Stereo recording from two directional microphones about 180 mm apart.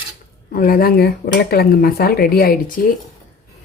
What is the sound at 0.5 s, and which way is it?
A woman's voice, 55° left (ahead or behind).